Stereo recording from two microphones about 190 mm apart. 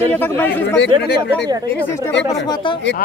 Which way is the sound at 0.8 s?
55° left (ahead or behind).